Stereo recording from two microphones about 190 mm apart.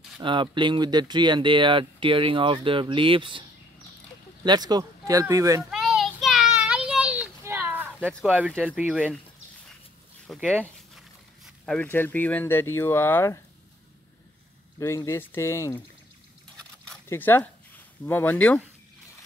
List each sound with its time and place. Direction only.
0.2 s speech: 25° right (ahead or behind)
4.5 s speech: 20° right (ahead or behind)
5.6 s child singing: centre (ahead or behind)
8.1 s speech: 5° right (ahead or behind)
10.2 s a sound: 5° left (ahead or behind)
12.7 s speech: 10° left (ahead or behind)
15.0 s speech: 15° left (ahead or behind)
17.1 s speech: 10° left (ahead or behind)